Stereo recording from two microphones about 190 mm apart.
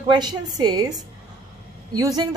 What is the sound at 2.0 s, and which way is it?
Speech, 20° right (ahead or behind).